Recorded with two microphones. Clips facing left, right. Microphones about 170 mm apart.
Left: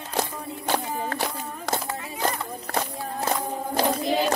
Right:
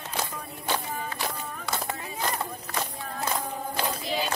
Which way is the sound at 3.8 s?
40° left (ahead or behind).